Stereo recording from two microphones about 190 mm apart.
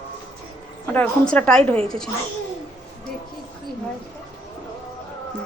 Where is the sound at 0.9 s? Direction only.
5° left (ahead or behind).